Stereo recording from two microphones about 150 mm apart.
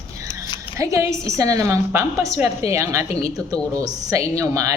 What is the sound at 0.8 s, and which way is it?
A woman's voice, 20° right (ahead or behind).